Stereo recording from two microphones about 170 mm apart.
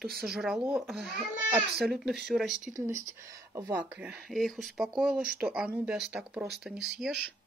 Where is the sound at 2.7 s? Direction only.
15° right (ahead or behind).